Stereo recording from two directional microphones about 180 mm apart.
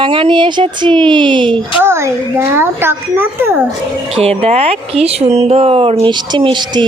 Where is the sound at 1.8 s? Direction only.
15° right (ahead or behind).